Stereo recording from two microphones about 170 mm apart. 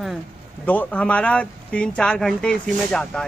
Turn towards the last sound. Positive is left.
turn(degrees=5)  # may be behind; listen again after turning